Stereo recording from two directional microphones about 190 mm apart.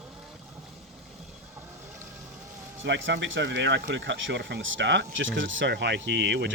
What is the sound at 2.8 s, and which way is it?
Speech, 75° right (ahead or behind).